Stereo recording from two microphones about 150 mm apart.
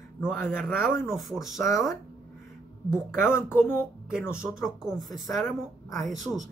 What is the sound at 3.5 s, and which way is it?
Speech, 15° left (ahead or behind).